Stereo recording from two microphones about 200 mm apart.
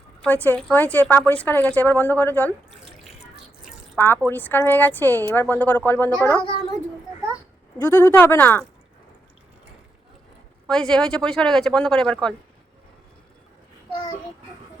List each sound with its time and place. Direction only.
0.2 s speech: 10° left (ahead or behind)
3.9 s speech: 10° left (ahead or behind)
7.9 s speech: 10° left (ahead or behind)
10.7 s speech: 5° left (ahead or behind)